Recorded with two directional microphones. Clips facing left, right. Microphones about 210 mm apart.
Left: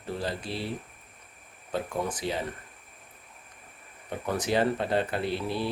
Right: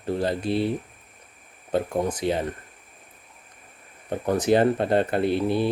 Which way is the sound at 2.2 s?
55° right (ahead or behind).